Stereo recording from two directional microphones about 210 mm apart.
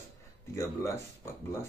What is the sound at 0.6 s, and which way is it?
Speech, 10° left (ahead or behind).